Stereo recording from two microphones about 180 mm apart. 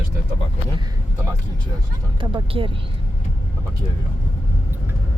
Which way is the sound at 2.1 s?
30° right (ahead or behind).